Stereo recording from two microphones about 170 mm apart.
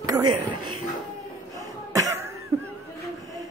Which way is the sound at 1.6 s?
20° right (ahead or behind).